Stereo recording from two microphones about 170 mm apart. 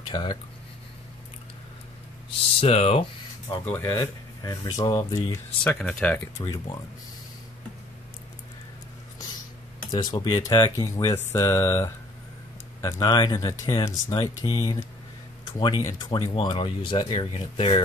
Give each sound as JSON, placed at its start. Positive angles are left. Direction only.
{"t": 0.1, "sound": "speech", "side_deg": 25}
{"t": 2.6, "sound": "speech", "side_deg": 35}
{"t": 3.6, "sound": "speech", "side_deg": 10}
{"t": 5.6, "sound": "speech", "side_deg": 5}
{"t": 9.8, "sound": "speech", "side_deg": 25}